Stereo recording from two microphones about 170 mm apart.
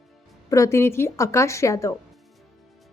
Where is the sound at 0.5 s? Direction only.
15° left (ahead or behind).